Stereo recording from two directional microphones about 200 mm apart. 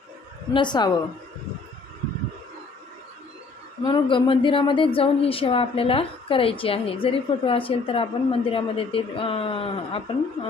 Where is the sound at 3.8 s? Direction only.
25° left (ahead or behind).